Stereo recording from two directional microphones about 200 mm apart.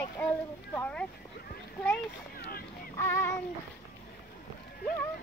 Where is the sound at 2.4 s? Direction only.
50° left (ahead or behind).